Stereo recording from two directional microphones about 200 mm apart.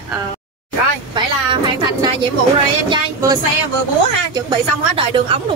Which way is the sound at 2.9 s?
20° right (ahead or behind).